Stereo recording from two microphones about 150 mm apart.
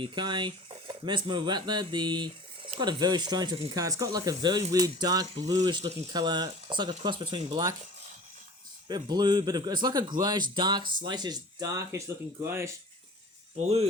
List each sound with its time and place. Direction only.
0.0 s speech: 30° right (ahead or behind)
8.9 s speech: 30° right (ahead or behind)